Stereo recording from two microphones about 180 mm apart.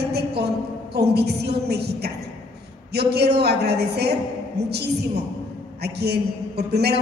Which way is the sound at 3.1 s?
65° right (ahead or behind).